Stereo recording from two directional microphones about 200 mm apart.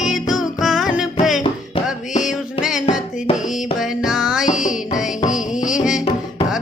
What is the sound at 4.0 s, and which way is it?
Music, centre (ahead or behind).